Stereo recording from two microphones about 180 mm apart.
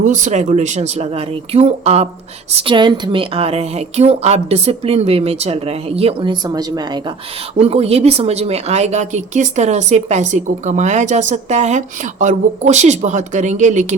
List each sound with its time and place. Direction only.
0.0 s a woman's voice: 40° right (ahead or behind); by 7.0 s 20° right (ahead or behind)
7.6 s a woman's voice: 35° right (ahead or behind)